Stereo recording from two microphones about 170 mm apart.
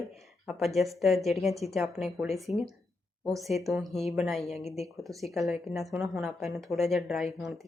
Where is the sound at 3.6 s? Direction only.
Centre (ahead or behind).